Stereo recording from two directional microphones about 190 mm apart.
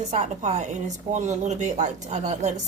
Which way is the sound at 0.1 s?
35° right (ahead or behind).